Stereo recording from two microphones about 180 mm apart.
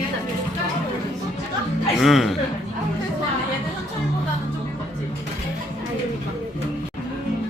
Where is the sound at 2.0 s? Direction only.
Centre (ahead or behind).